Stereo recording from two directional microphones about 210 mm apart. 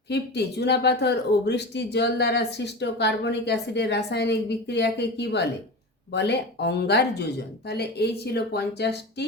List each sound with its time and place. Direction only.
0.1 s speech: 55° left (ahead or behind)